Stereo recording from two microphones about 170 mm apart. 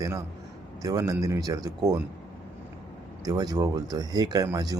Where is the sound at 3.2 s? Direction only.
20° right (ahead or behind).